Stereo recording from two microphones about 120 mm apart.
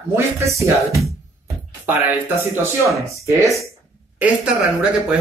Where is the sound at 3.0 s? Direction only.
25° right (ahead or behind).